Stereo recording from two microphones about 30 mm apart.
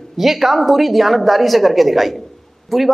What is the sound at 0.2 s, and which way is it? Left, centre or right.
Speech, centre.